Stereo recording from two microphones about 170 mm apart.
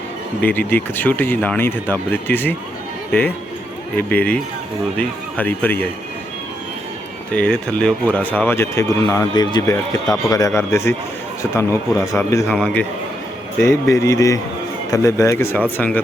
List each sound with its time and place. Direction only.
0.4 s speech: 10° left (ahead or behind)
7.3 s speech: 5° left (ahead or behind)
12.5 s a man's voice: 5° left (ahead or behind)
13.6 s speech: 20° left (ahead or behind)